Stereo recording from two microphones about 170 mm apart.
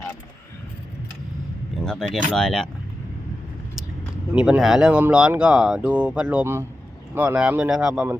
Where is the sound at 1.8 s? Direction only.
5° left (ahead or behind).